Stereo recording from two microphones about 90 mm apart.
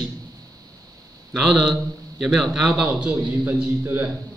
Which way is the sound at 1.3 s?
5° right (ahead or behind).